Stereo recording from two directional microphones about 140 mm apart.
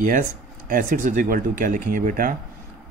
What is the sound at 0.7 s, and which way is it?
Speech, 80° right.